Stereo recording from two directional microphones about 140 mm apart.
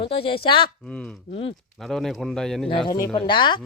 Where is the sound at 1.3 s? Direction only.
40° left (ahead or behind).